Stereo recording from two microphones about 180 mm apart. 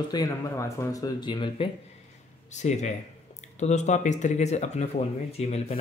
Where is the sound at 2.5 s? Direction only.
40° left (ahead or behind).